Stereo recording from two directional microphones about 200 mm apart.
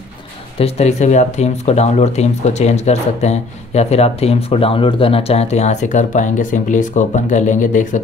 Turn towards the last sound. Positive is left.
turn(degrees=40)  # may be behind; listen again after turning